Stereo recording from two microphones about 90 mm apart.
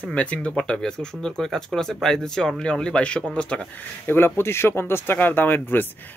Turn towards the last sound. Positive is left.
turn(degrees=20)  # may be behind; listen again after turning